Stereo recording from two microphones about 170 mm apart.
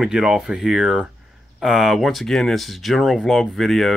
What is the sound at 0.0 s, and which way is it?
Speech, 5° right (ahead or behind).